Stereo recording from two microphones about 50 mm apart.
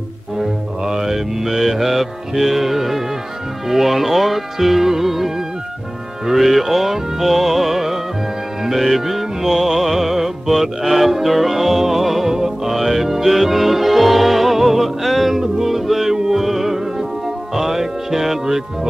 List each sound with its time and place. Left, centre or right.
0.4 s music: centre
3.6 s speech: centre
6.2 s music: centre